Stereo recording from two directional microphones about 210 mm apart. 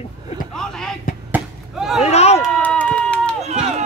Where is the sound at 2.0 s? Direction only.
30° left (ahead or behind).